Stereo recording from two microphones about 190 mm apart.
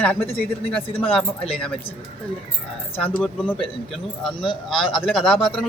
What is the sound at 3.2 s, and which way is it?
Speech, 5° left (ahead or behind).